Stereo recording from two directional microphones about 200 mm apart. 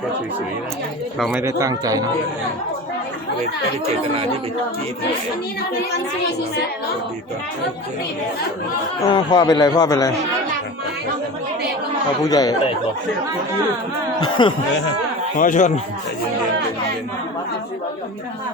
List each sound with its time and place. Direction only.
1.3 s speech: 15° right (ahead or behind)
9.0 s a man's voice: 20° left (ahead or behind)
12.2 s a man's voice: 20° left (ahead or behind)
14.2 s a man's voice: 25° left (ahead or behind)
15.4 s a man's voice: 40° left (ahead or behind)